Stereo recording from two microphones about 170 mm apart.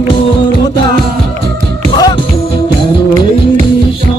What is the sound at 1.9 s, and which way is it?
Music, 25° left (ahead or behind).